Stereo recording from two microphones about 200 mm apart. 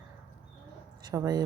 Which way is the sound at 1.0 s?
20° right (ahead or behind).